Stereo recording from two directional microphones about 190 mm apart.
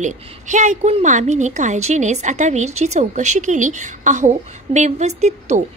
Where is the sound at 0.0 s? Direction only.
40° right (ahead or behind).